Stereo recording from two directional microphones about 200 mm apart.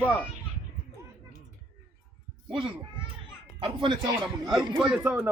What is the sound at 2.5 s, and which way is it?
A child's voice, 25° right (ahead or behind).